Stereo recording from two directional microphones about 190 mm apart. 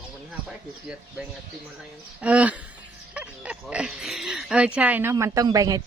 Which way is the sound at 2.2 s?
5° right (ahead or behind).